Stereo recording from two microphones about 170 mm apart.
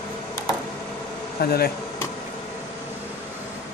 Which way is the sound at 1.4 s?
65° left (ahead or behind).